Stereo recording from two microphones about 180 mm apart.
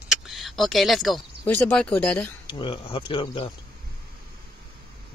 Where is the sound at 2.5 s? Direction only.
30° left (ahead or behind).